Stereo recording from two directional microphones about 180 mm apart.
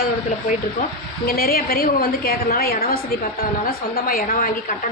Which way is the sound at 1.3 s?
55° left (ahead or behind).